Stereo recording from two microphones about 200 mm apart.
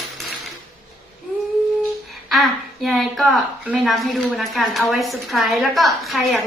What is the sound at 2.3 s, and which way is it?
A woman's voice, centre (ahead or behind).